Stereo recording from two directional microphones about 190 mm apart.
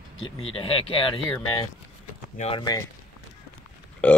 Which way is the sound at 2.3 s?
35° left (ahead or behind).